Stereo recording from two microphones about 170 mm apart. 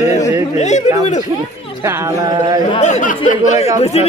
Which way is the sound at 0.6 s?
40° left (ahead or behind).